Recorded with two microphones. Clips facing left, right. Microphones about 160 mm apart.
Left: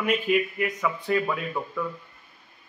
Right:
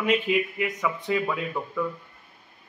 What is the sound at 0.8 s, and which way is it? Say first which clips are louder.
Speech: left 1 dB; 5° right (ahead or behind).